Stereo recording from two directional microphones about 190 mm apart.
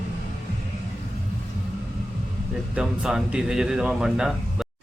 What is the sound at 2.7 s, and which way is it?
Speech, 5° right (ahead or behind).